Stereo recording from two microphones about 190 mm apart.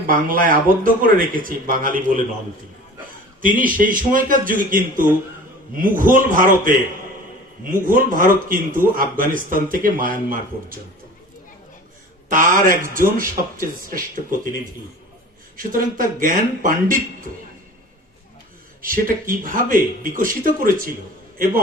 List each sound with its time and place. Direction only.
0.1 s speech: 45° right (ahead or behind)
3.4 s speech: 45° right (ahead or behind)
12.3 s speech: 45° right (ahead or behind)
15.5 s speech: 45° right (ahead or behind)
18.8 s a man's voice: 45° right (ahead or behind)